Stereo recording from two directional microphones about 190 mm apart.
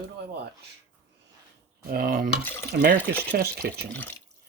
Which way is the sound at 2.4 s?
10° left (ahead or behind).